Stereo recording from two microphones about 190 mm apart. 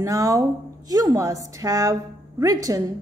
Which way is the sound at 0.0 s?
15° right (ahead or behind).